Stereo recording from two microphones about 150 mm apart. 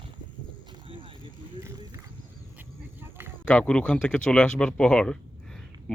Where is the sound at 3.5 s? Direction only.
5° left (ahead or behind).